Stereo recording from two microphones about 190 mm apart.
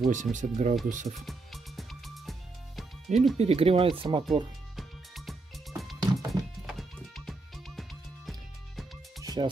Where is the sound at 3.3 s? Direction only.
30° right (ahead or behind).